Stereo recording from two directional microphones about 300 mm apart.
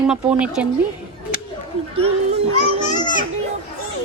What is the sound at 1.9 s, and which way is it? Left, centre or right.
Children playing, centre.